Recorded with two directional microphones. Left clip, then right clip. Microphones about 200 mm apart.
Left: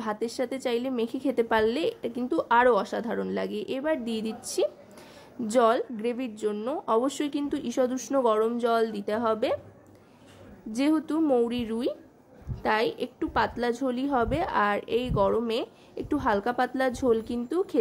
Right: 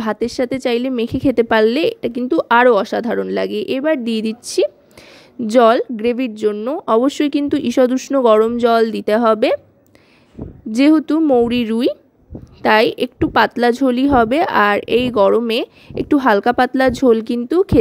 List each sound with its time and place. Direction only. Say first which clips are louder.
0.0 s a woman's voice: right 11 dB; 35° right (ahead or behind)
10.7 s a woman's voice: right 13 dB; 35° right (ahead or behind)